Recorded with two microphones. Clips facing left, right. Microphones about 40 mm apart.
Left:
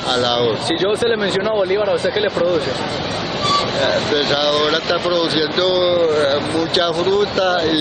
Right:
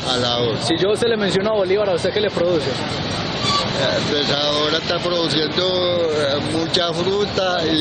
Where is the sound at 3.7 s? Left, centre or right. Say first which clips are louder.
Left 3 dB; centre.